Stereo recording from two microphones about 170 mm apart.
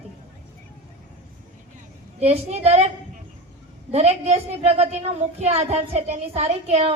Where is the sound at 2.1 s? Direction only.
40° right (ahead or behind).